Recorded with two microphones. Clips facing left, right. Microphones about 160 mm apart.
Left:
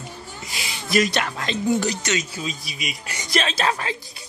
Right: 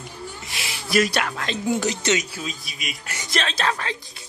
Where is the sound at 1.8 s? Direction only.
20° right (ahead or behind).